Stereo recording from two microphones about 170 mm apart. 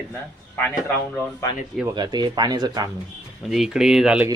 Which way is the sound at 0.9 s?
10° left (ahead or behind).